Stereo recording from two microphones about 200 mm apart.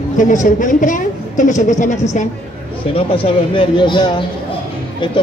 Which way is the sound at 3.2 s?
25° left (ahead or behind).